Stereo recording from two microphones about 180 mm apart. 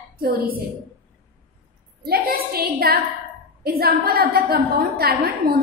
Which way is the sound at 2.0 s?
55° right (ahead or behind).